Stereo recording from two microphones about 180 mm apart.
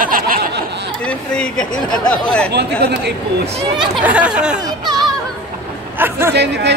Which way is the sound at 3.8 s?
5° right (ahead or behind).